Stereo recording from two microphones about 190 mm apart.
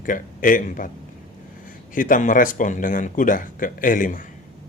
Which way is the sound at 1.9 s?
45° left (ahead or behind).